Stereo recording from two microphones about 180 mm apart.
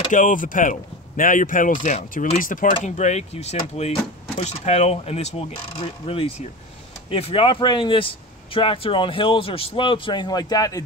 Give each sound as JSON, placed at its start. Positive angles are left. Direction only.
{"t": 0.1, "sound": "speech", "side_deg": 45}